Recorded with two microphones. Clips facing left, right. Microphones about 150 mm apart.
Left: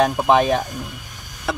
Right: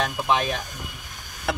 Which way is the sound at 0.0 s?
40° left (ahead or behind).